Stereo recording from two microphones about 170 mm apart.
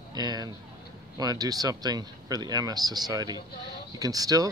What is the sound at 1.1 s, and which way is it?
Speech, 20° right (ahead or behind).